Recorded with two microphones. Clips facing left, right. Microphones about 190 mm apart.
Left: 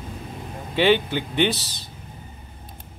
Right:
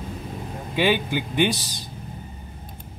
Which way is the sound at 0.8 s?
10° right (ahead or behind).